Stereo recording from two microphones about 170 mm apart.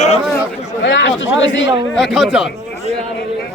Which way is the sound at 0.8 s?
90° left.